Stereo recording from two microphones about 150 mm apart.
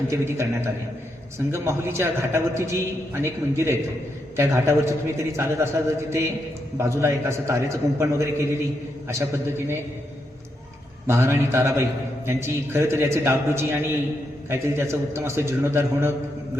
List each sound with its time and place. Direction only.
0.1 s a man's voice: 20° right (ahead or behind)
11.0 s a man's voice: 15° right (ahead or behind)